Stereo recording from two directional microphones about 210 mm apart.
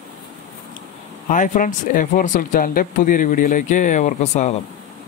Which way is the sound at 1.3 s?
35° left (ahead or behind).